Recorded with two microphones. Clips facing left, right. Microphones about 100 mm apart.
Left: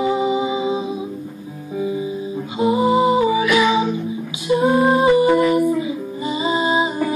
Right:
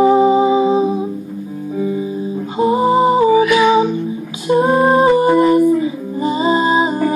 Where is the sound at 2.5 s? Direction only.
40° right (ahead or behind).